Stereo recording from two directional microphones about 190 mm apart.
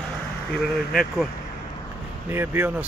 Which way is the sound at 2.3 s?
10° right (ahead or behind).